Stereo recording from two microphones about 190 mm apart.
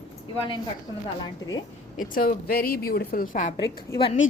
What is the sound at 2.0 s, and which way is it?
A woman's voice, 50° left (ahead or behind).